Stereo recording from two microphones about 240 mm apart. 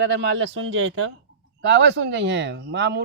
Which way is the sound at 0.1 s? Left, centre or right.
Right.